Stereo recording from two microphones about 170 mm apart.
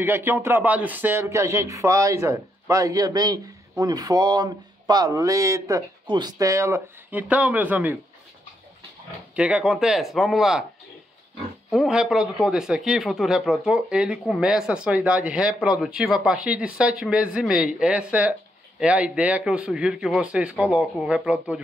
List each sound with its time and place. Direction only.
0.0 s speech: 15° right (ahead or behind)
9.3 s a man's voice: 5° right (ahead or behind)
11.7 s a man's voice: centre (ahead or behind)